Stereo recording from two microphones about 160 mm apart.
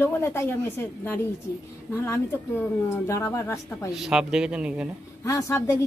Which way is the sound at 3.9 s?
5° right (ahead or behind).